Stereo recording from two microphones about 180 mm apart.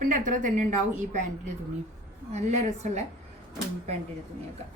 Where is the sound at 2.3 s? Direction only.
40° right (ahead or behind).